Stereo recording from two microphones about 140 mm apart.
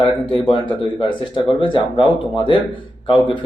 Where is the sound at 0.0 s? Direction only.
35° left (ahead or behind).